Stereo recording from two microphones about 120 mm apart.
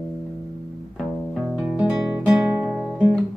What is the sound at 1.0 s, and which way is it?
Music, centre (ahead or behind).